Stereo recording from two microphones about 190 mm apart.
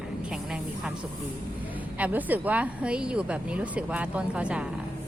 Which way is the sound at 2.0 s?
10° right (ahead or behind).